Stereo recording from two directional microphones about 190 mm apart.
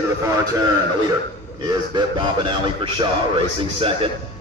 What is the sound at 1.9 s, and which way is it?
A man's voice, 25° right (ahead or behind).